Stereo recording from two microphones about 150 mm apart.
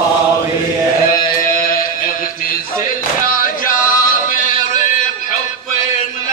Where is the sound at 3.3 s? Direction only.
70° left (ahead or behind).